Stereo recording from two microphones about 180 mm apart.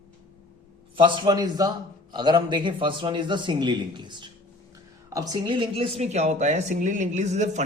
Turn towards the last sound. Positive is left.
turn(degrees=-40)  # may be behind; listen again after turning